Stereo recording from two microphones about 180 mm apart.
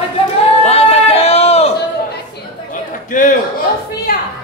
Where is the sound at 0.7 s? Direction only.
35° left (ahead or behind).